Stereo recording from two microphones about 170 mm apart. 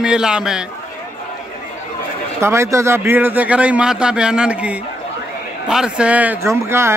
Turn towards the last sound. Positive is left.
turn(degrees=-15)  # may be behind; listen again after turning